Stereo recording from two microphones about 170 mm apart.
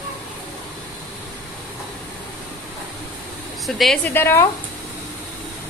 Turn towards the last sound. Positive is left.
turn(degrees=15)  # may be behind; listen again after turning